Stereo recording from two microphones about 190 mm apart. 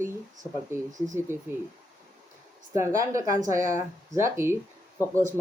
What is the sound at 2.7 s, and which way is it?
Speech, 15° right (ahead or behind).